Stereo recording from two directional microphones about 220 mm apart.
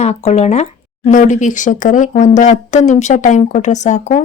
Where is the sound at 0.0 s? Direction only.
30° left (ahead or behind).